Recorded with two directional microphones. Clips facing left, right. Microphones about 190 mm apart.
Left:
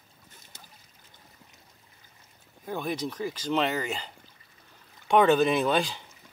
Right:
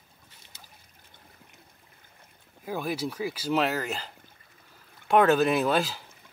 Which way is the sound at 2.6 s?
5° right (ahead or behind).